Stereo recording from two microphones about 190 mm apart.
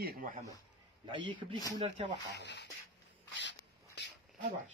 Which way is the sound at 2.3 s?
65° left (ahead or behind).